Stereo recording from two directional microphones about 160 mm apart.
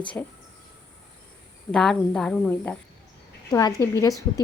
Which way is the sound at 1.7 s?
5° left (ahead or behind).